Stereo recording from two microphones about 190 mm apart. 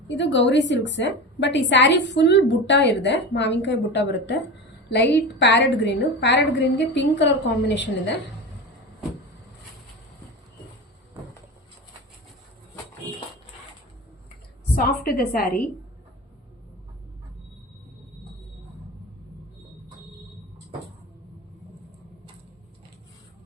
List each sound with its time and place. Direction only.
0.1 s a woman's voice: 70° left (ahead or behind)
14.8 s a woman's voice: 55° left (ahead or behind)